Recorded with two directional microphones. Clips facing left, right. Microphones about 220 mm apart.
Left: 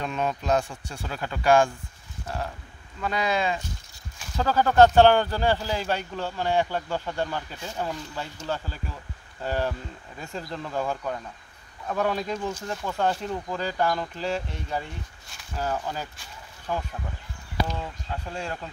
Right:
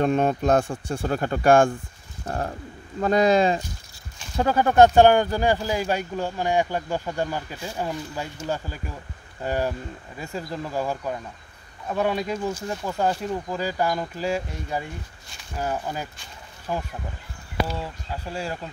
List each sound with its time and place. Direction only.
0.0 s speech: 50° right (ahead or behind)
4.4 s speech: 20° right (ahead or behind)